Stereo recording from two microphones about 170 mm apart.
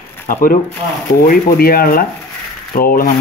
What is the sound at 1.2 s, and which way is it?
Rub, 60° left (ahead or behind).